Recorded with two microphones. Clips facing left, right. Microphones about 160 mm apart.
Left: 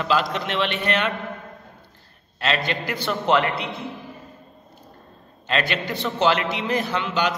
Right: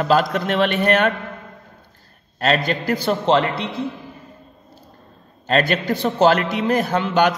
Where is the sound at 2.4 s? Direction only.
45° right (ahead or behind).